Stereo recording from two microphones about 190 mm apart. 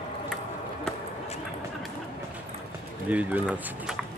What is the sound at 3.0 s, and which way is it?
Speech, 10° right (ahead or behind).